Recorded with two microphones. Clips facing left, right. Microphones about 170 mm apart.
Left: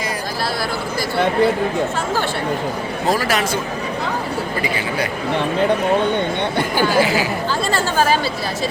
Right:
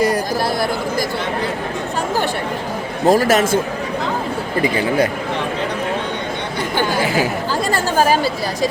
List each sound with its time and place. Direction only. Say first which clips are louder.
3.1 s a man's voice: right 6 dB; 45° right (ahead or behind)
7.7 s speech: right 2 dB; 15° right (ahead or behind)